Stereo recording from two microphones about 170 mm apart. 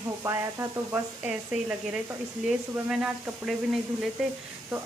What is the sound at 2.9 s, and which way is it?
Speech, 5° right (ahead or behind).